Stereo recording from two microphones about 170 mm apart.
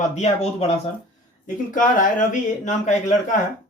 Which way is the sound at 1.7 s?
50° left (ahead or behind).